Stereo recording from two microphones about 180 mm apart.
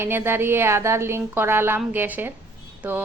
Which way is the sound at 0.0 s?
10° right (ahead or behind).